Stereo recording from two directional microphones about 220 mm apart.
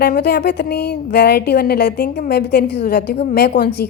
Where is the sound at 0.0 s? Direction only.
45° left (ahead or behind).